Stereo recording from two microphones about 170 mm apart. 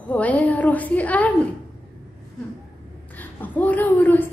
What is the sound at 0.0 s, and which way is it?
A woman's voice, 10° left (ahead or behind).